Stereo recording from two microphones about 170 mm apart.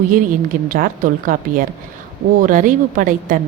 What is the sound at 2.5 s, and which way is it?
Speech, 50° right (ahead or behind).